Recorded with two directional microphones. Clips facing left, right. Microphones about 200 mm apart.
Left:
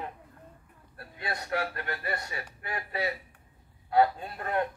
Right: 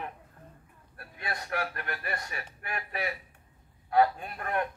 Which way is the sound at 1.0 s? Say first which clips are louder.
Left 1 dB; 25° left (ahead or behind).